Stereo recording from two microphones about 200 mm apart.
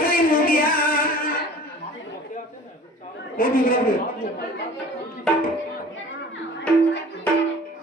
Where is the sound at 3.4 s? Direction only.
45° left (ahead or behind).